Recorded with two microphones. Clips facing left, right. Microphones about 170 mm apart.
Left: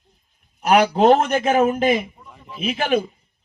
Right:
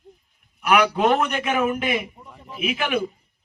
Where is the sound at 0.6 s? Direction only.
40° left (ahead or behind).